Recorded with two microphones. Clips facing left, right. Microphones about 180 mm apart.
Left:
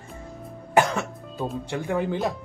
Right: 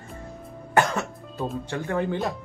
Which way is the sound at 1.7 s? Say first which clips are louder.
Left 1 dB; 10° left (ahead or behind).